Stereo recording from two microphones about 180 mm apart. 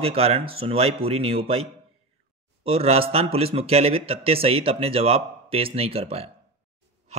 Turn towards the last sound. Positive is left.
turn(degrees=-35)  # may be behind; listen again after turning